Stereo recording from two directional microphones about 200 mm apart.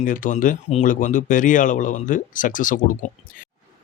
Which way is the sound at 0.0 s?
40° left (ahead or behind).